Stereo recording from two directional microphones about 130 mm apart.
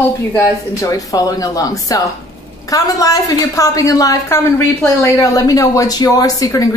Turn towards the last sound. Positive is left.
turn(degrees=25)  # may be behind; listen again after turning